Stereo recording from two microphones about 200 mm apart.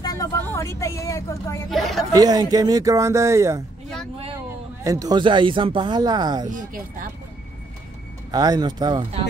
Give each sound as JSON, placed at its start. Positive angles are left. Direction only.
{"t": 0.0, "sound": "speech", "side_deg": 20}
{"t": 1.7, "sound": "speech", "side_deg": 0}
{"t": 2.1, "sound": "speech", "side_deg": -20}
{"t": 4.8, "sound": "speech", "side_deg": -20}
{"t": 6.5, "sound": "speech", "side_deg": -40}
{"t": 8.3, "sound": "speech", "side_deg": -20}